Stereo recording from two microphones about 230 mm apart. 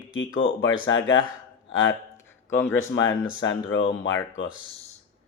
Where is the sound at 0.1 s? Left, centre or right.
Left.